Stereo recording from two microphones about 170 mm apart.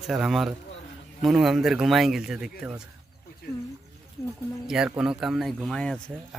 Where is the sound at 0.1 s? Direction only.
Centre (ahead or behind).